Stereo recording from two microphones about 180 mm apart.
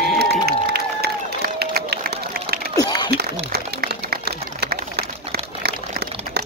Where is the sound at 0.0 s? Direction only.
65° right (ahead or behind).